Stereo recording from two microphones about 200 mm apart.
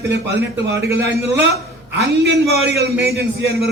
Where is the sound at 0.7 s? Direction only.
15° right (ahead or behind).